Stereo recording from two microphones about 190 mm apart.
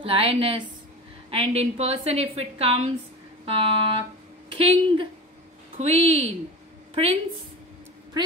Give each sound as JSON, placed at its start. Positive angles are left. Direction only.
{"t": 0.0, "sound": "a woman's voice", "side_deg": -30}